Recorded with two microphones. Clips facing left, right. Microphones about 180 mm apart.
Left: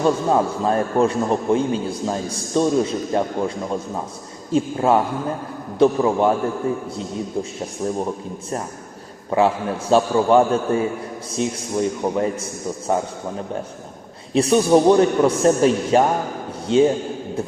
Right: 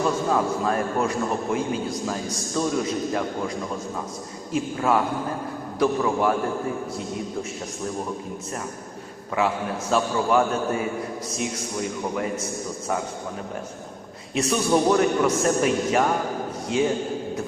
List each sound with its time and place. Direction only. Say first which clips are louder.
0.0 s a man's voice: left 4 dB; 30° left (ahead or behind)
4.5 s a man's voice: left 5 dB; 30° left (ahead or behind)
9.3 s a man's voice: left 6 dB; 30° left (ahead or behind)
14.3 s a man's voice: left 7 dB; 30° left (ahead or behind)